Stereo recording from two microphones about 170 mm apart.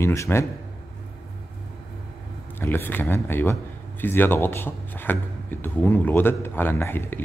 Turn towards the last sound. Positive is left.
turn(degrees=15)  # may be behind; listen again after turning